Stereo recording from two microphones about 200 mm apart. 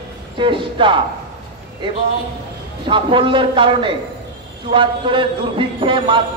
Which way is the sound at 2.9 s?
25° right (ahead or behind).